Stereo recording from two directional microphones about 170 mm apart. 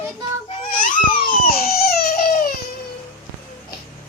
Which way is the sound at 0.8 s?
60° left (ahead or behind).